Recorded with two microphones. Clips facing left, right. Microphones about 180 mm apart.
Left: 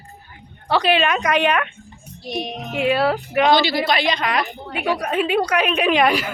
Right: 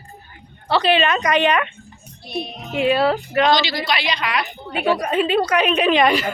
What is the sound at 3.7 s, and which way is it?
Speech, 50° left (ahead or behind).